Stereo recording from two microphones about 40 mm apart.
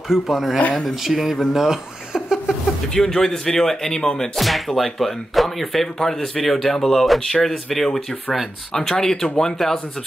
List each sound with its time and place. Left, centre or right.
0.1 s speech: centre
2.1 s a sound: centre
2.9 s speech: centre
4.4 s speech: centre